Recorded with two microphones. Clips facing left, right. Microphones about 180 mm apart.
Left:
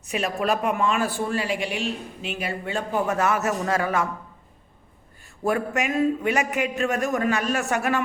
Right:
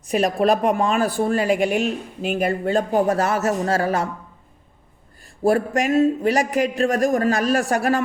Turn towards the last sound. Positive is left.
turn(degrees=-35)  # may be behind; listen again after turning